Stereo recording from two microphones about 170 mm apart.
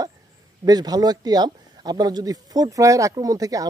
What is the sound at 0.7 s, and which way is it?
Speech, 25° right (ahead or behind).